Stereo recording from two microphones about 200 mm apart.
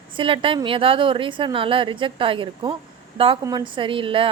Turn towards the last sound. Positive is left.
turn(degrees=-25)  # may be behind; listen again after turning